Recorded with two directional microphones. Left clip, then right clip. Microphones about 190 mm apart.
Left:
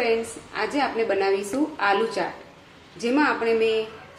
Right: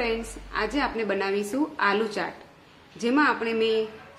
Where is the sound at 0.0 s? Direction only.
40° right (ahead or behind).